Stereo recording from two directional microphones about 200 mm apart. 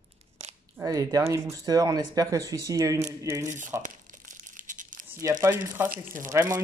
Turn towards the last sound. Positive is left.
turn(degrees=-15)  # may be behind; listen again after turning